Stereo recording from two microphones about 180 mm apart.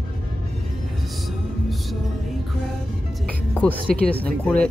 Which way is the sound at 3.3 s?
10° left (ahead or behind).